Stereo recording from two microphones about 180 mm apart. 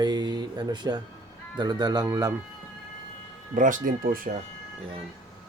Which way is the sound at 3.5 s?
45° right (ahead or behind).